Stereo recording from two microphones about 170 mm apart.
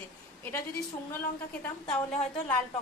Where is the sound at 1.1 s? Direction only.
5° left (ahead or behind).